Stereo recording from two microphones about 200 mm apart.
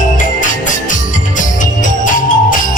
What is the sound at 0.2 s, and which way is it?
Music, 40° left (ahead or behind).